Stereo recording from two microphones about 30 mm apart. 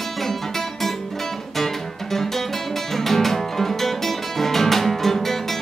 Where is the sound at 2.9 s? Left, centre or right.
Centre.